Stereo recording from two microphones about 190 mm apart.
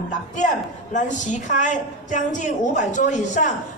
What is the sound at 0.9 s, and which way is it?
A woman's voice, 40° left (ahead or behind).